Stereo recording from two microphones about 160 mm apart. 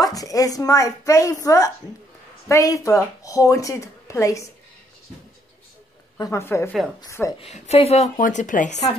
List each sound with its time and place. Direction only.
0.0 s speech: 20° left (ahead or behind)
6.1 s a woman's voice: 20° left (ahead or behind)
7.3 s speech: 40° left (ahead or behind)
8.2 s speech: 50° left (ahead or behind)